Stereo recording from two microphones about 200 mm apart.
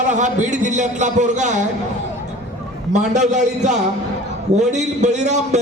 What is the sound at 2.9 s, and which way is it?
A man's voice, 35° right (ahead or behind).